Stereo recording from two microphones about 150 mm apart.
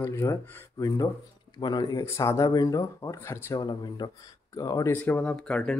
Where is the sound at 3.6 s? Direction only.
30° left (ahead or behind).